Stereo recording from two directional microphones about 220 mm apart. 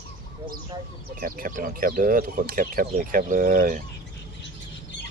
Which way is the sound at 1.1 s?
40° right (ahead or behind).